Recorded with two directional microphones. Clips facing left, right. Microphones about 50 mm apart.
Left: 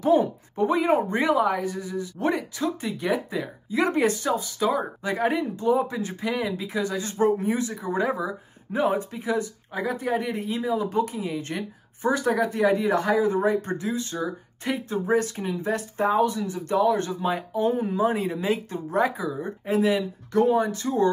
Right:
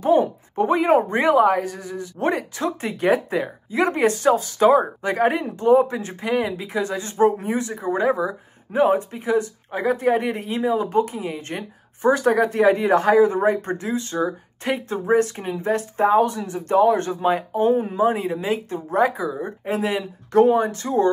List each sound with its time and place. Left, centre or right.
0.0 s speech: right